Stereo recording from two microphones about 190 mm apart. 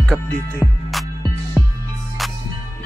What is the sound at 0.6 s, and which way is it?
Music, 15° left (ahead or behind).